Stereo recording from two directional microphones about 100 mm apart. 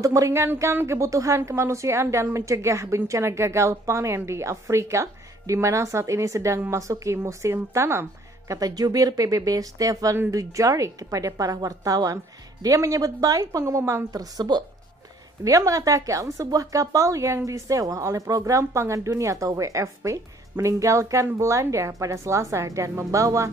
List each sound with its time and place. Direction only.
0.0 s a woman's voice: 35° right (ahead or behind)
8.5 s a woman's voice: 40° right (ahead or behind)